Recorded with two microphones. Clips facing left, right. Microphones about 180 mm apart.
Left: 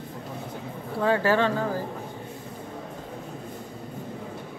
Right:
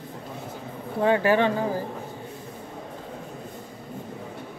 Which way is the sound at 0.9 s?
20° right (ahead or behind).